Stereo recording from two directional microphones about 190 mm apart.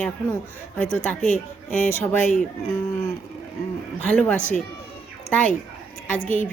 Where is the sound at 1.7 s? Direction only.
10° left (ahead or behind).